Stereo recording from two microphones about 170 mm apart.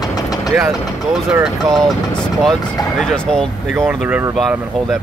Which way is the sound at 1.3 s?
Centre (ahead or behind).